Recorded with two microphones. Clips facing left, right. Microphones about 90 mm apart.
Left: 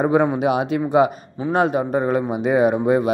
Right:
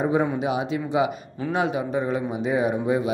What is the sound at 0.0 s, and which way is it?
Speech, 65° left (ahead or behind).